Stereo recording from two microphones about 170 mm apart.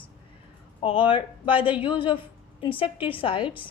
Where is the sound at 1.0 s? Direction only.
30° left (ahead or behind).